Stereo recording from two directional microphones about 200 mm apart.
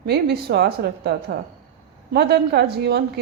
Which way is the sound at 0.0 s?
55° right (ahead or behind).